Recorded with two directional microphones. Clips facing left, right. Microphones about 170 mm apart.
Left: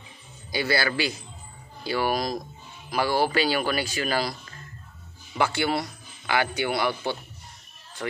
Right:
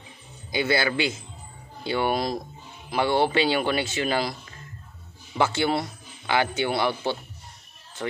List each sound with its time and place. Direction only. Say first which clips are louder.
0.5 s a man's voice: right 2 dB; 20° right (ahead or behind)
5.4 s a man's voice: right 1 dB; 25° right (ahead or behind)